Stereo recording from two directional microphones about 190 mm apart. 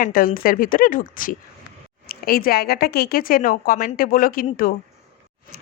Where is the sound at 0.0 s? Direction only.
50° left (ahead or behind).